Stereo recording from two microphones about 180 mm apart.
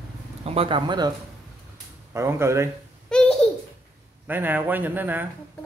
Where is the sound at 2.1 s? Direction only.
15° right (ahead or behind).